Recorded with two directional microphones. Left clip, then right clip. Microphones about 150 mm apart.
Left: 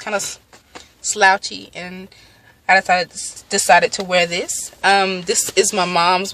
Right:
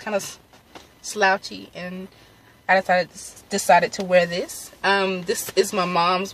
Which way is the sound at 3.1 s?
15° right (ahead or behind).